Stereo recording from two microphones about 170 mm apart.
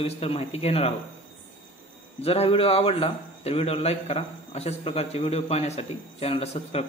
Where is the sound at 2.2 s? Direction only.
35° left (ahead or behind).